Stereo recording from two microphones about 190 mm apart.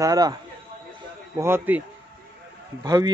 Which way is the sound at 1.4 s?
10° right (ahead or behind).